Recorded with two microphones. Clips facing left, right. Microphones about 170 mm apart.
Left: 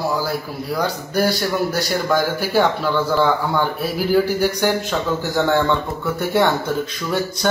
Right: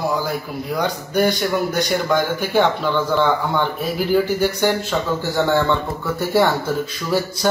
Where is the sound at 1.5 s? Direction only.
5° left (ahead or behind).